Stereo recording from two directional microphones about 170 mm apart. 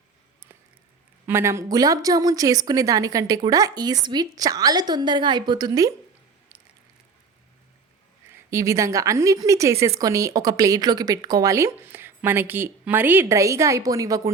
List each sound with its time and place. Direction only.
1.3 s a woman's voice: 15° right (ahead or behind)
8.4 s a woman's voice: 15° right (ahead or behind)